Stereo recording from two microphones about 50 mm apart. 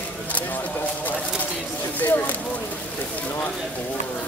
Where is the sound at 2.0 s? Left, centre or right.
Left.